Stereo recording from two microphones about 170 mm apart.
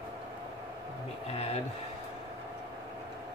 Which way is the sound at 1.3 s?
40° left (ahead or behind).